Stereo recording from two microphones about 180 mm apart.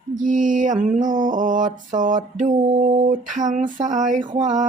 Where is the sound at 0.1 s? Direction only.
45° right (ahead or behind).